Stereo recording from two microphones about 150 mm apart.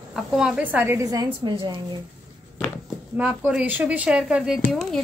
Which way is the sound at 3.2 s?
10° right (ahead or behind).